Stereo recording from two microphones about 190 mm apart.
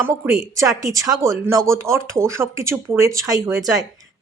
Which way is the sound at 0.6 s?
15° right (ahead or behind).